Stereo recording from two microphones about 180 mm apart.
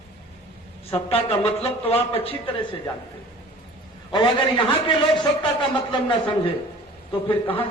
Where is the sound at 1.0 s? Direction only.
35° left (ahead or behind).